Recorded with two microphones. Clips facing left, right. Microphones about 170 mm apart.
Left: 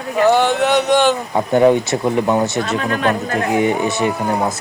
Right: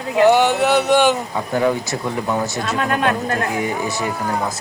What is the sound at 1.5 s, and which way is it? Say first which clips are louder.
Speech: left 6 dB; 25° left (ahead or behind).